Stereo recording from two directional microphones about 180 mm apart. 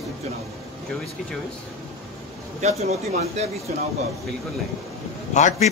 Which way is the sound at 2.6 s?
35° right (ahead or behind).